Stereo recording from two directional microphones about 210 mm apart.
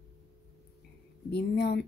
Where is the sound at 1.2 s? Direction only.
50° left (ahead or behind).